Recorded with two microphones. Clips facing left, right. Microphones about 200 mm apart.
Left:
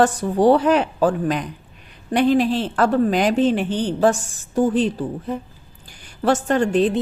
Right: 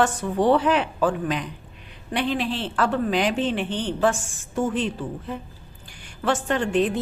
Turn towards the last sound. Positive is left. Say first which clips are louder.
# left 4 dB
turn(degrees=40)  # may be behind; listen again after turning